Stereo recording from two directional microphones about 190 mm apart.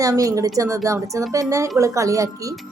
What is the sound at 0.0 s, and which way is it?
A woman's voice, 20° right (ahead or behind).